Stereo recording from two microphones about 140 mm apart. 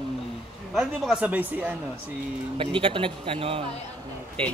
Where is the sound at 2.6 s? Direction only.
40° right (ahead or behind).